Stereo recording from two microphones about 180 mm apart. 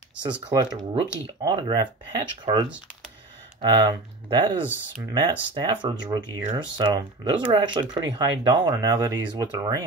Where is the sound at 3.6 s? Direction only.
25° right (ahead or behind).